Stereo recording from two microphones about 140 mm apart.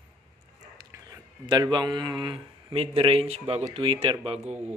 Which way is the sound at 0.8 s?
30° right (ahead or behind).